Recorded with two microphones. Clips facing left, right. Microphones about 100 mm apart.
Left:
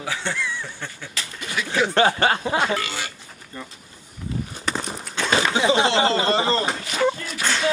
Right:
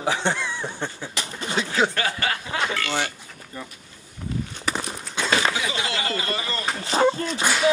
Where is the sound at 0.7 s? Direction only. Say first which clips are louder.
Right 4 dB; 20° right (ahead or behind).